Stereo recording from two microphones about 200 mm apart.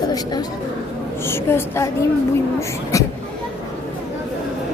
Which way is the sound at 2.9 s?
15° left (ahead or behind).